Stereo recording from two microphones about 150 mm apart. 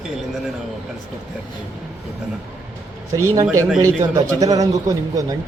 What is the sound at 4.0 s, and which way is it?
Speech, 20° right (ahead or behind).